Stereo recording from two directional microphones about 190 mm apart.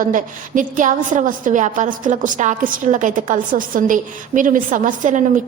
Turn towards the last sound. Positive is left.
turn(degrees=-45)  # may be behind; listen again after turning